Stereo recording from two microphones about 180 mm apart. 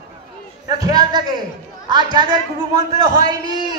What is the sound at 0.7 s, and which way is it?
A man's voice, 20° right (ahead or behind).